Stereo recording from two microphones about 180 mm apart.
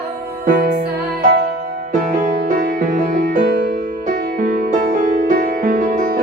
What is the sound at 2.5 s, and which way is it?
Music, 50° right (ahead or behind).